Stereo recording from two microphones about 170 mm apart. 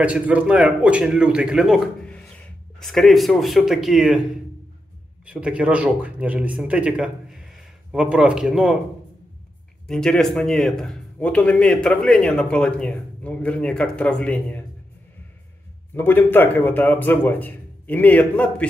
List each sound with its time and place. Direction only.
0.0 s speech: 10° right (ahead or behind)
5.2 s speech: 5° right (ahead or behind)
9.8 s speech: 5° left (ahead or behind)
15.9 s a man's voice: 10° left (ahead or behind)